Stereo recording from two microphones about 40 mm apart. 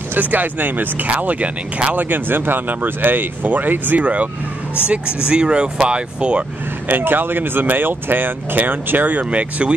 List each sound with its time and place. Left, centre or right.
0.1 s speech: right
1.0 s speech: right
2.0 s speech: right
4.0 s speech: right
4.8 s speech: right
6.9 s speech: right
9.2 s speech: right